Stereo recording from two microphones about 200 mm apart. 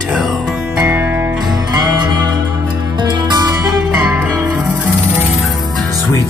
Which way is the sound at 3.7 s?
Centre (ahead or behind).